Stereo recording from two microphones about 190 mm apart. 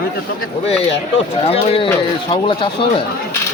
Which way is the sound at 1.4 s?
30° left (ahead or behind).